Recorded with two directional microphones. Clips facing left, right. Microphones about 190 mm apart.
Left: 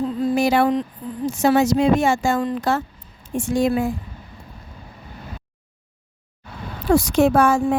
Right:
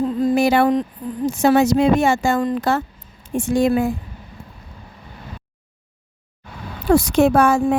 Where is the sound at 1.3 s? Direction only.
60° right (ahead or behind).